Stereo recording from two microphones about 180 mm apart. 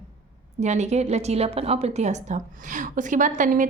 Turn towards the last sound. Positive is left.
turn(degrees=-45)  # may be behind; listen again after turning